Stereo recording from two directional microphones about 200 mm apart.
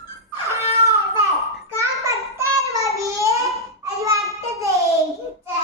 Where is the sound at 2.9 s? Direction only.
15° right (ahead or behind).